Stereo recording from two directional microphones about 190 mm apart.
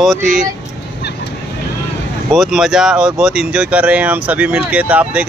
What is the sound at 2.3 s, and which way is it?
Speech, centre (ahead or behind).